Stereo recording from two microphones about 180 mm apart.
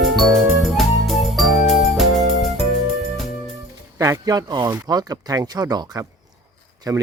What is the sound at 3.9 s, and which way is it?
Speech, 15° right (ahead or behind).